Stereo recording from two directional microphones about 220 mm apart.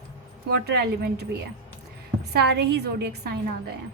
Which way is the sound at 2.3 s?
50° right (ahead or behind).